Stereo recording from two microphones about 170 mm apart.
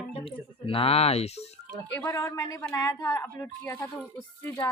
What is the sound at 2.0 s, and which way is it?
Speech, 15° left (ahead or behind).